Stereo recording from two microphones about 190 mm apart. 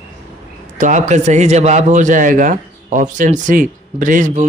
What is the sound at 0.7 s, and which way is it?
A man's voice, 40° right (ahead or behind).